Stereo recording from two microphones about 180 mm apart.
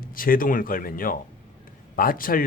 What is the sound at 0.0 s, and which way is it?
Speech, 50° left (ahead or behind).